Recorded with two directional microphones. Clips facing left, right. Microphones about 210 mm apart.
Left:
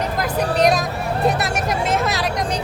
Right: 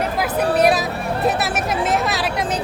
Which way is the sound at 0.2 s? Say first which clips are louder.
Right 1 dB; 5° right (ahead or behind).